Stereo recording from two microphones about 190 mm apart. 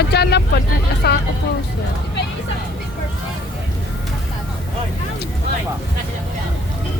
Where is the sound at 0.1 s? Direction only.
60° left (ahead or behind).